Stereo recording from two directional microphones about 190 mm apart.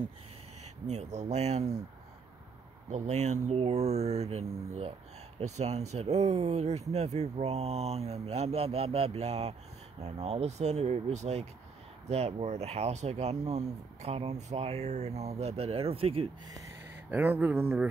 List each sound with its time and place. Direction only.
0.8 s speech: 35° right (ahead or behind)
2.9 s speech: 35° right (ahead or behind)
17.1 s speech: 10° right (ahead or behind)